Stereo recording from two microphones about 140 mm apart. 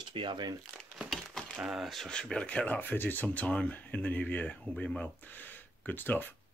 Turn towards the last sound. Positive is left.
turn(degrees=15)  # may be behind; listen again after turning